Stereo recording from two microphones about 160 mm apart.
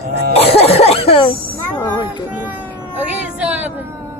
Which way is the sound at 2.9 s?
10° right (ahead or behind).